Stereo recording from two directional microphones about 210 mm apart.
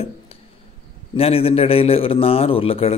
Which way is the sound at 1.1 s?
25° left (ahead or behind).